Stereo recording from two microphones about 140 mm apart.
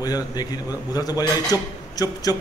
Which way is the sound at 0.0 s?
30° left (ahead or behind).